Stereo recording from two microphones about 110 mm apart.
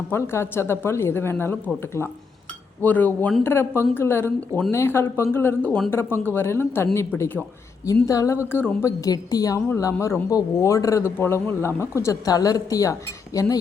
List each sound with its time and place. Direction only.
0.1 s a man's voice: 25° left (ahead or behind)
8.0 s a man's voice: 30° left (ahead or behind)
8.8 s a woman's voice: 30° left (ahead or behind)